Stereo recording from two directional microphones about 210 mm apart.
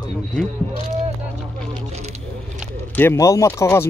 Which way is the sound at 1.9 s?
30° right (ahead or behind).